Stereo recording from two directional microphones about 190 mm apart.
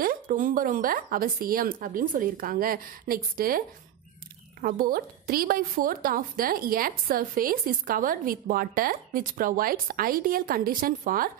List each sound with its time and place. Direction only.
0.0 s a woman's voice: 45° right (ahead or behind)